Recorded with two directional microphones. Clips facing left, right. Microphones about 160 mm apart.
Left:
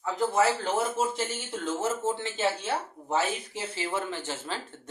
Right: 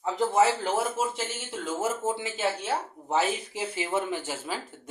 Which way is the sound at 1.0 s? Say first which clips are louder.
Left 1 dB; 5° right (ahead or behind).